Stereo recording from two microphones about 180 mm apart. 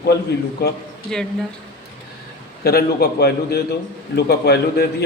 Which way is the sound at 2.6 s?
60° left (ahead or behind).